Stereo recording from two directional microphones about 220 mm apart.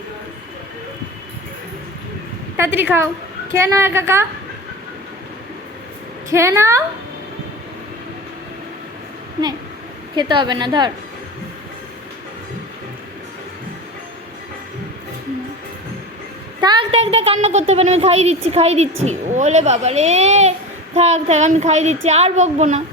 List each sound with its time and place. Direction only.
2.6 s a woman's voice: 10° right (ahead or behind)
6.3 s a woman's voice: 15° right (ahead or behind)
10.2 s a woman's voice: 20° right (ahead or behind)
16.6 s a woman's voice: 20° right (ahead or behind)